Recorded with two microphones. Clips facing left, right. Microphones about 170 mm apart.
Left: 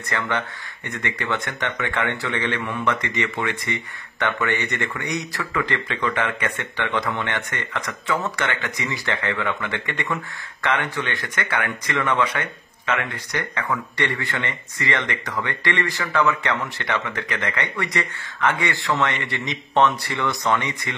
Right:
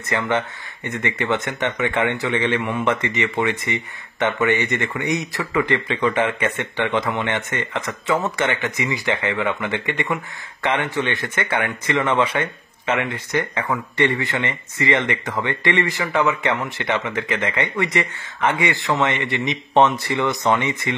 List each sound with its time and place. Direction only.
0.1 s speech: 20° right (ahead or behind)